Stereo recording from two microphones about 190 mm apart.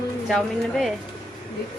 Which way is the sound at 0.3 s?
Centre (ahead or behind).